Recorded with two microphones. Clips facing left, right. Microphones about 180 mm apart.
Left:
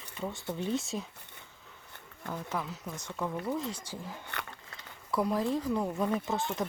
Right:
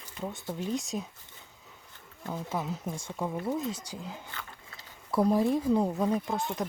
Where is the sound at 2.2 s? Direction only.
15° right (ahead or behind).